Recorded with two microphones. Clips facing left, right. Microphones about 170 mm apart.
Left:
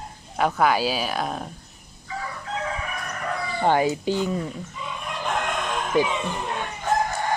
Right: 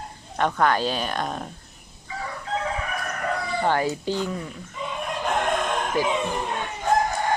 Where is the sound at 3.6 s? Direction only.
15° left (ahead or behind).